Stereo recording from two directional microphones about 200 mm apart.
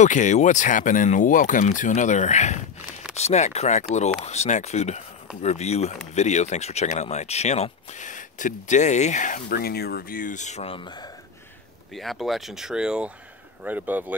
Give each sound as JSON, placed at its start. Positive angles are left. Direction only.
{"t": 0.0, "sound": "speech", "side_deg": 35}
{"t": 11.9, "sound": "speech", "side_deg": 0}